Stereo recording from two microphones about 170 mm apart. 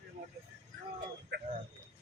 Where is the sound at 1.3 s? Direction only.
85° right.